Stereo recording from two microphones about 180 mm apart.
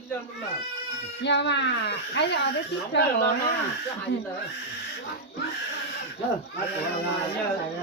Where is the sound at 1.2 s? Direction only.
75° left (ahead or behind).